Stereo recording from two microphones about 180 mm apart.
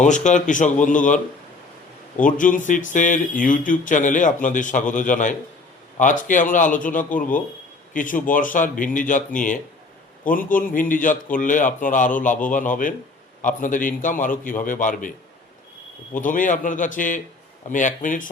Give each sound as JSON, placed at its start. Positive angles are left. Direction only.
{"t": 0.0, "sound": "speech", "side_deg": 40}
{"t": 16.1, "sound": "speech", "side_deg": 45}